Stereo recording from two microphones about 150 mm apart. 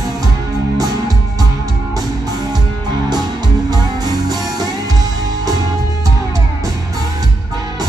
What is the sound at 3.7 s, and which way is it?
Music, 25° right (ahead or behind).